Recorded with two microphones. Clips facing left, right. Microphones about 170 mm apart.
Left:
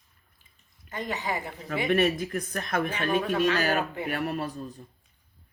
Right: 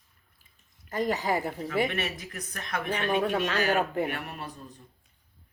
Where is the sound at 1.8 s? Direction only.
40° left (ahead or behind).